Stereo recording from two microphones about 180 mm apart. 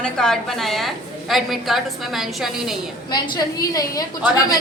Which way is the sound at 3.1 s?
20° left (ahead or behind).